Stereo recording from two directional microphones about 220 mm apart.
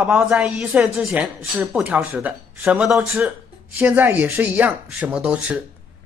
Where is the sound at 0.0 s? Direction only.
5° right (ahead or behind).